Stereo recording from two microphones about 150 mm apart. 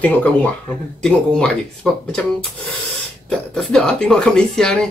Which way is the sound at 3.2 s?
5° left (ahead or behind).